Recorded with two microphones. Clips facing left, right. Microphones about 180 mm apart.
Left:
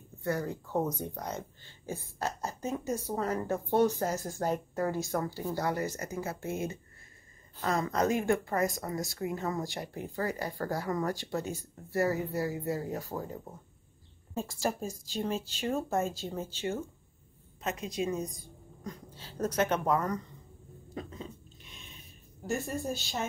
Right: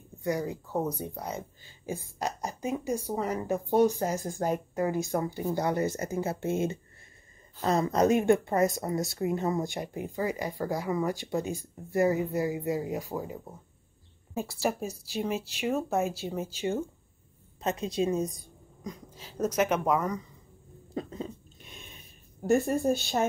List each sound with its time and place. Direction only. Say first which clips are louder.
0.2 s speech: right 2 dB; 15° right (ahead or behind)
17.6 s a woman's voice: right 5 dB; 30° right (ahead or behind)
18.9 s speech: right 2 dB; 10° right (ahead or behind)
20.9 s dog: right 6 dB; 35° right (ahead or behind)
22.4 s a woman's voice: right 9 dB; 55° right (ahead or behind)